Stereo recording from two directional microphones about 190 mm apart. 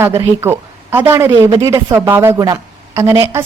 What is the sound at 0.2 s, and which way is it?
A woman's voice, 15° right (ahead or behind).